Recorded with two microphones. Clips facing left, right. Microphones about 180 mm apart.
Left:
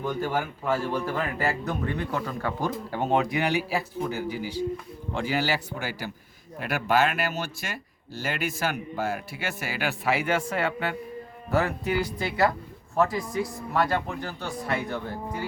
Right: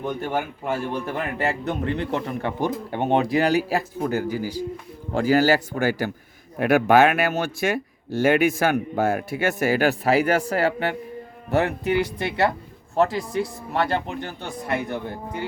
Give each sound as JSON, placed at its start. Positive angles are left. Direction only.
{"t": 0.0, "sound": "speech", "side_deg": -20}